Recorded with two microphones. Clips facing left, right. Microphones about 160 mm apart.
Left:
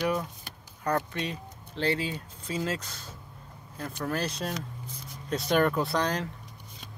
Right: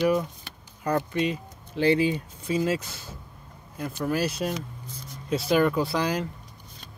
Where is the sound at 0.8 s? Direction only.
10° right (ahead or behind).